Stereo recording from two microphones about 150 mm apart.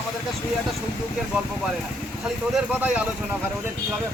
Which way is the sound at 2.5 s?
5° right (ahead or behind).